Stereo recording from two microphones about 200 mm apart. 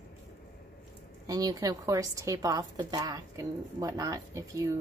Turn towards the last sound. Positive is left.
turn(degrees=-15)  # may be behind; listen again after turning